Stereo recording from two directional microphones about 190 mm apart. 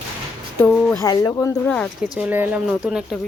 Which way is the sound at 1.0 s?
20° left (ahead or behind).